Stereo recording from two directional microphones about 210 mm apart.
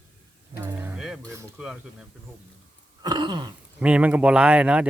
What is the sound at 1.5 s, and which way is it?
Speech, 5° right (ahead or behind).